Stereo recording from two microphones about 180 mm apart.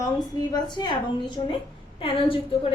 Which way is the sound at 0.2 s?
20° left (ahead or behind).